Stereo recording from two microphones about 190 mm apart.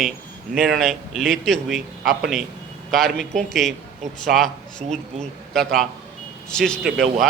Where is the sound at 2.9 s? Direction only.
Centre (ahead or behind).